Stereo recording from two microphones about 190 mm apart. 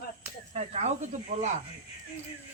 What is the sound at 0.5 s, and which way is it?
Speech, 35° right (ahead or behind).